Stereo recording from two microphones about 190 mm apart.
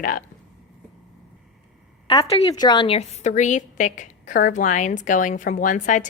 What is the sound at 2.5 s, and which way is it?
A woman's voice, 20° left (ahead or behind).